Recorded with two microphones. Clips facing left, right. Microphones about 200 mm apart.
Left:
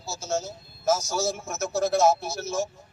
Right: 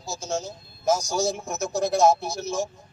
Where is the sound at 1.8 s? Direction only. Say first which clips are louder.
Right 1 dB; 15° right (ahead or behind).